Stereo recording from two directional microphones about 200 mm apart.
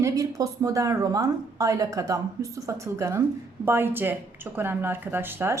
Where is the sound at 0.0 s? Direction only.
15° right (ahead or behind).